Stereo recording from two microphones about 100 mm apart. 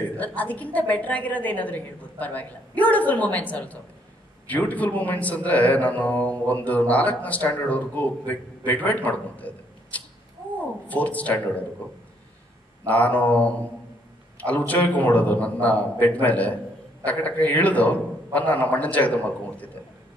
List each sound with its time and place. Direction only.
0.4 s speech: 15° left (ahead or behind)
12.8 s speech: 15° left (ahead or behind)
14.7 s a man's voice: 15° left (ahead or behind)